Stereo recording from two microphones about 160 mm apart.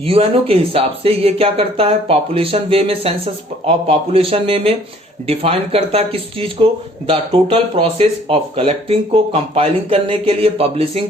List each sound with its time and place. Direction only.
0.0 s speech: 35° right (ahead or behind)